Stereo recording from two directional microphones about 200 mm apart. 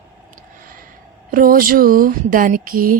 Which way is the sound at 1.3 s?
45° right (ahead or behind).